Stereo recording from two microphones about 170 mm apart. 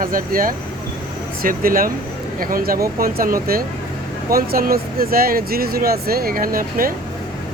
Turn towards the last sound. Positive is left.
turn(degrees=-55)  # may be behind; listen again after turning